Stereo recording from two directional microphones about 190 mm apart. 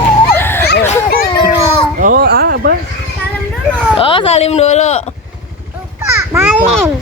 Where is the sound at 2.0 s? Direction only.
55° right (ahead or behind).